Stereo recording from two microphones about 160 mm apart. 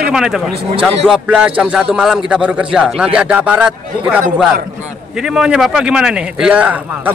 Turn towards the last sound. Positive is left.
turn(degrees=-10)  # may be behind; listen again after turning